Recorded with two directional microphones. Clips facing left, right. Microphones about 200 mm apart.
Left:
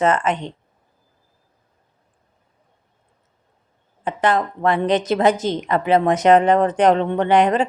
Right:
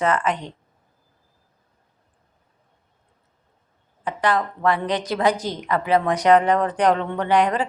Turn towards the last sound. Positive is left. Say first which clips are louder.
# left 4 dB
turn(degrees=25)  # may be behind; listen again after turning